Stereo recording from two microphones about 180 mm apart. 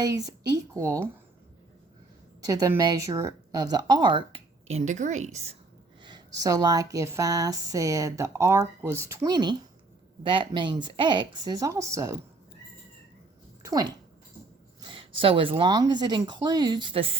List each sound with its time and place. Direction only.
0.0 s speech: 20° right (ahead or behind)
2.5 s speech: 20° right (ahead or behind); by 5.5 s 40° right (ahead or behind)
6.0 s speech: 25° right (ahead or behind)
13.6 s speech: 20° right (ahead or behind)